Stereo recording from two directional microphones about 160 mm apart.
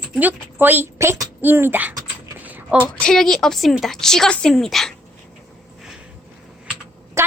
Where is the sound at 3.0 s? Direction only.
5° left (ahead or behind).